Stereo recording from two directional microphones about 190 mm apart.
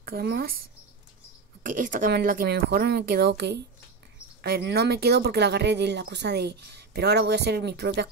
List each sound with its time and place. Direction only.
0.0 s speech: 55° right (ahead or behind)